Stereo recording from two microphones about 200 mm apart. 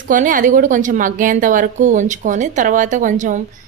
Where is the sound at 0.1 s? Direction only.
40° right (ahead or behind).